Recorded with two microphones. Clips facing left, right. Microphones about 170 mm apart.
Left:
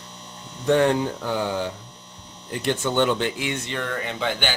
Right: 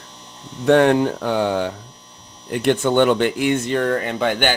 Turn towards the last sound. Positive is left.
turn(degrees=-55)  # may be behind; listen again after turning